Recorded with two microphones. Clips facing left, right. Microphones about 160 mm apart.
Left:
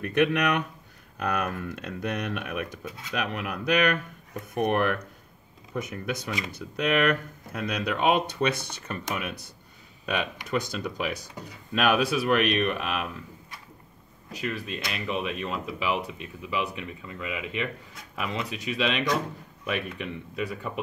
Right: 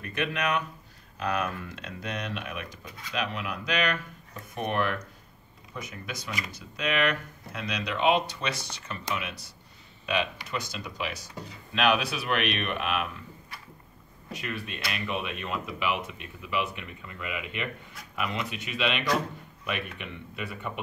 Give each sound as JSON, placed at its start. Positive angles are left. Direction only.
{"t": 0.0, "sound": "speech", "side_deg": 60}
{"t": 14.3, "sound": "speech", "side_deg": 35}